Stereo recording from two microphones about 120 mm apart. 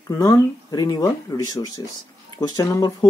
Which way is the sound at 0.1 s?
25° left (ahead or behind).